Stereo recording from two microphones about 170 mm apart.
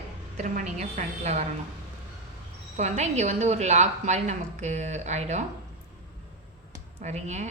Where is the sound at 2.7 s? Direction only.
40° right (ahead or behind).